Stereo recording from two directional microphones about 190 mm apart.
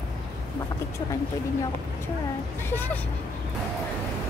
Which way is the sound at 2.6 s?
10° left (ahead or behind).